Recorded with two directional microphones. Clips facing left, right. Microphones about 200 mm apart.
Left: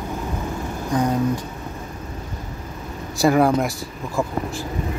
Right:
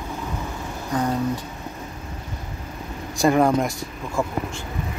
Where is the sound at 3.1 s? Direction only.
5° left (ahead or behind).